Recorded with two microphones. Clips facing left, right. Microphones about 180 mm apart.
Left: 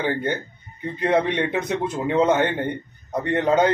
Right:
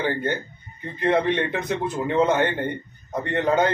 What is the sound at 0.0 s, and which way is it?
A man's voice, 20° left (ahead or behind).